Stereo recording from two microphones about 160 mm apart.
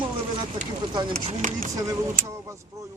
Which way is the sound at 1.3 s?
50° right (ahead or behind).